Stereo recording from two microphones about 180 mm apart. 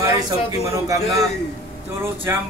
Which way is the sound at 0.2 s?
15° right (ahead or behind).